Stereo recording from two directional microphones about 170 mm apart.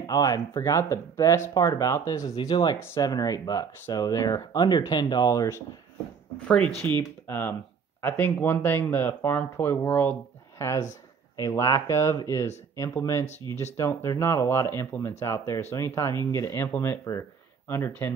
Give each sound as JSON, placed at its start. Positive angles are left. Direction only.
{"t": 0.0, "sound": "speech", "side_deg": 20}
{"t": 6.4, "sound": "speech", "side_deg": 5}